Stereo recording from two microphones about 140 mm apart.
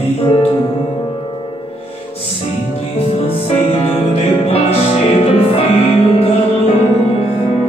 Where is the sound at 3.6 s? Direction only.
45° left (ahead or behind).